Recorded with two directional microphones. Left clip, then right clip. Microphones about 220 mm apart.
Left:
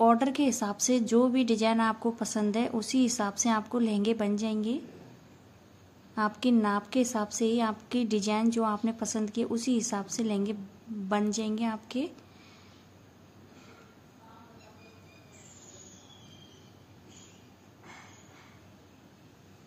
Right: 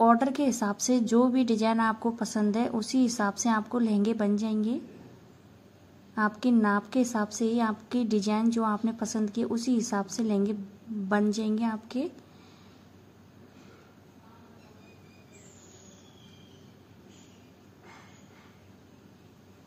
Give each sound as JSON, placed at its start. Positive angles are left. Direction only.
{"t": 0.0, "sound": "a woman's voice", "side_deg": -5}
{"t": 6.1, "sound": "a woman's voice", "side_deg": -5}